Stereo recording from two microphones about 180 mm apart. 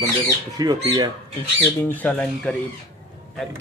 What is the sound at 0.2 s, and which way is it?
Speech, 25° right (ahead or behind).